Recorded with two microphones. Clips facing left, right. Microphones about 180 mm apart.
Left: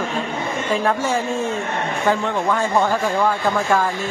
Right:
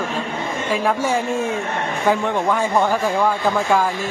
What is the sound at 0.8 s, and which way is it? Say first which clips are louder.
A man's voice: right 3 dB; 15° right (ahead or behind).